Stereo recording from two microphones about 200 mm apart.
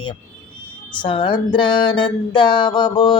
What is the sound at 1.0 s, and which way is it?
Music, 25° left (ahead or behind).